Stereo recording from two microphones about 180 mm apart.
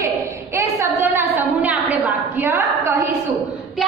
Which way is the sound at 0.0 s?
15° right (ahead or behind).